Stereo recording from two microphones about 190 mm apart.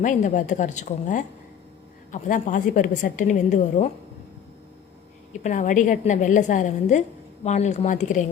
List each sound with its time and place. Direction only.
0.0 s a woman's voice: 40° left (ahead or behind)
5.4 s a woman's voice: 40° left (ahead or behind)